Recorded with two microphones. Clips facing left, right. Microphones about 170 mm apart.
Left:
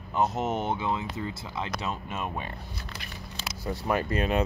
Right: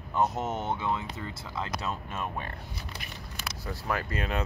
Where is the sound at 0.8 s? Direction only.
15° left (ahead or behind).